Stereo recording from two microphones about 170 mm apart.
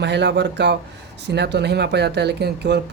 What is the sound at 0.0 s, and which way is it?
Speech, 90° right.